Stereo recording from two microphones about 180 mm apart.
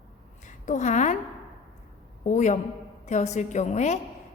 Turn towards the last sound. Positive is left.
turn(degrees=40)  # may be behind; listen again after turning